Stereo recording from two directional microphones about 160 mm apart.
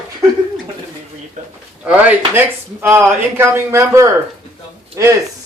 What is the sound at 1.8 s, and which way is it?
Speech, 10° right (ahead or behind).